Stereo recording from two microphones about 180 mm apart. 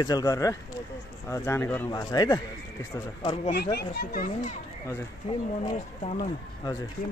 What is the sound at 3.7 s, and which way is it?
Speech, 60° left (ahead or behind).